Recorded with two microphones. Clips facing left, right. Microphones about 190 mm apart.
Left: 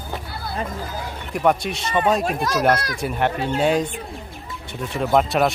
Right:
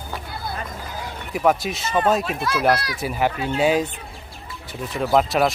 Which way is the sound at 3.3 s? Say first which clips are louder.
Left 2 dB; 35° left (ahead or behind).